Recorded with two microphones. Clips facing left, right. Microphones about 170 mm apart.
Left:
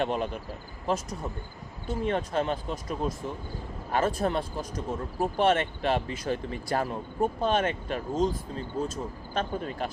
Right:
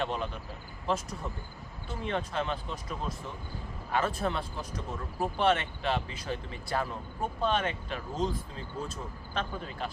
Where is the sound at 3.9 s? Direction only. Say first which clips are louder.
Left 4 dB; 40° left (ahead or behind).